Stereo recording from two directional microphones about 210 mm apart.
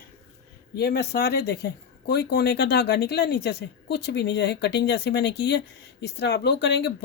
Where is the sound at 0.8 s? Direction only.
50° left (ahead or behind).